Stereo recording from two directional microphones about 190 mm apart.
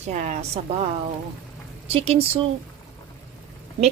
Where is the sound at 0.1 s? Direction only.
40° right (ahead or behind).